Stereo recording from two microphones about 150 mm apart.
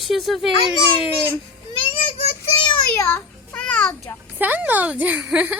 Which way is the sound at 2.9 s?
10° left (ahead or behind).